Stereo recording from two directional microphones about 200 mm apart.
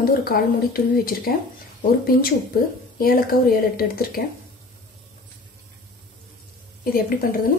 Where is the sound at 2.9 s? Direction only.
45° left (ahead or behind).